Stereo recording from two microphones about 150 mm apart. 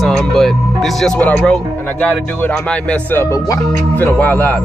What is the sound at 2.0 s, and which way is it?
Speech, 10° left (ahead or behind).